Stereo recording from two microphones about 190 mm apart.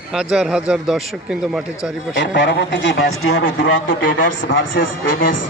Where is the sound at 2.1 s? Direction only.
70° left (ahead or behind).